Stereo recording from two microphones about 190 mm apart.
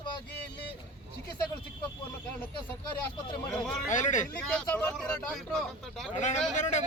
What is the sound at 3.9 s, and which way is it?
Speech, 40° left (ahead or behind).